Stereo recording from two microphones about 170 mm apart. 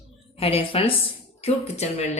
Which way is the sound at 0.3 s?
35° left (ahead or behind).